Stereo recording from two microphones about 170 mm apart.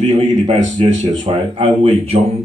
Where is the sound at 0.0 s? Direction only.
40° right (ahead or behind).